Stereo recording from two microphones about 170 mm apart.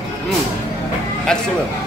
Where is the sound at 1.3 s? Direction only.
5° left (ahead or behind).